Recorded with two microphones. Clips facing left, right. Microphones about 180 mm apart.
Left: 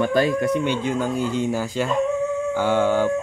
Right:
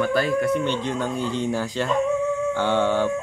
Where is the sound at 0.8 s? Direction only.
5° left (ahead or behind).